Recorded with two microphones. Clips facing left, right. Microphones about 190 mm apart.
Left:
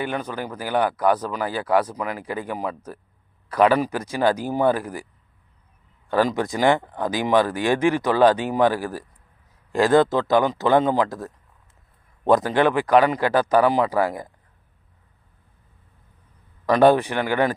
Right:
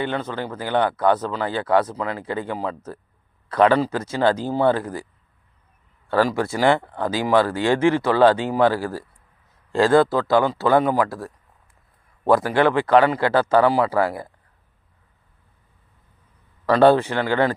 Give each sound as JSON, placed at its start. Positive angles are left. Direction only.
{"t": 0.0, "sound": "speech", "side_deg": 15}
{"t": 6.1, "sound": "a man's voice", "side_deg": 20}
{"t": 16.6, "sound": "speech", "side_deg": 15}